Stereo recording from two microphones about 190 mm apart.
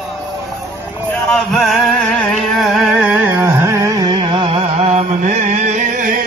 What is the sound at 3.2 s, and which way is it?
Carnatic music, 10° right (ahead or behind).